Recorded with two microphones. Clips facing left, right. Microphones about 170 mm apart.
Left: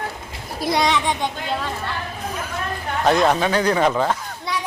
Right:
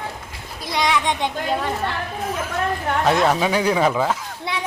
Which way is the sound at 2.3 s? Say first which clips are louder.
Right 3 dB; centre (ahead or behind).